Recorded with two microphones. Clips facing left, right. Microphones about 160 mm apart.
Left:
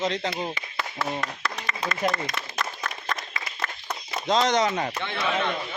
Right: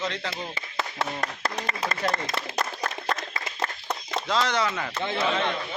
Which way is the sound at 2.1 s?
30° right (ahead or behind).